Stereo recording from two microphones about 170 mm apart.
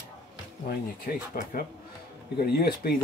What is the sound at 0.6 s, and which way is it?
Speech, 55° left (ahead or behind).